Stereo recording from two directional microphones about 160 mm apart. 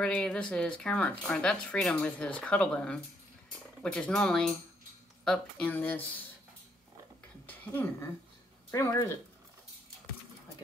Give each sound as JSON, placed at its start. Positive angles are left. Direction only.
{"t": 0.0, "sound": "speech", "side_deg": 5}
{"t": 7.4, "sound": "speech", "side_deg": 10}